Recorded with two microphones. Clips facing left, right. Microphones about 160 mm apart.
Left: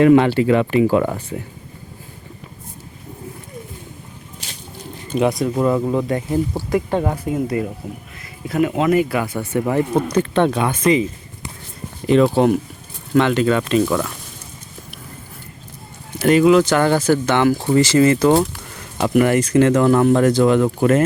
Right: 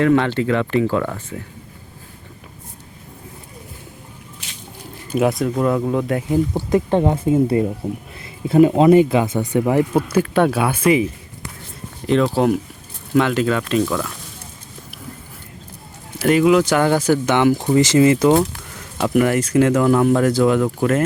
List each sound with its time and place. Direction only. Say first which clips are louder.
0.0 s speech: left 4 dB; 10° left (ahead or behind)
4.4 s a sound: left 4 dB; 35° left (ahead or behind)
5.1 s speech: even; centre (ahead or behind)
6.5 s speech: right 2 dB; 20° right (ahead or behind)
12.3 s speech: left 2 dB; centre (ahead or behind)
16.1 s speech: left 2 dB; 5° right (ahead or behind)
18.9 s speech: left 1 dB; centre (ahead or behind)